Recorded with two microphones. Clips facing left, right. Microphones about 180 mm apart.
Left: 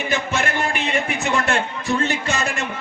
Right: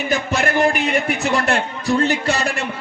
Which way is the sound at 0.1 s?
40° right (ahead or behind).